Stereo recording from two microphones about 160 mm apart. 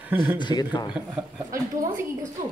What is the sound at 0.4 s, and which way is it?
Speech, 25° left (ahead or behind).